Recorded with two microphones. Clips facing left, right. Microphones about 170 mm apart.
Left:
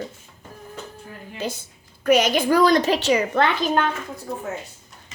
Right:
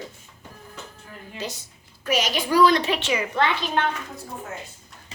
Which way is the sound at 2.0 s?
55° left (ahead or behind).